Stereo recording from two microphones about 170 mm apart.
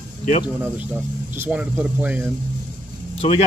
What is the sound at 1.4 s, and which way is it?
Speech, 10° right (ahead or behind).